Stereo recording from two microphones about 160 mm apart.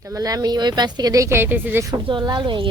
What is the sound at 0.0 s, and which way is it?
Speech, 20° right (ahead or behind).